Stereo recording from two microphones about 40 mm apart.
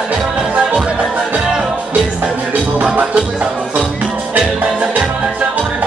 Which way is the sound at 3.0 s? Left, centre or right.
Right.